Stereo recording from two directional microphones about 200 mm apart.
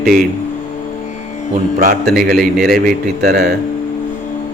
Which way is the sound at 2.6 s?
45° right (ahead or behind).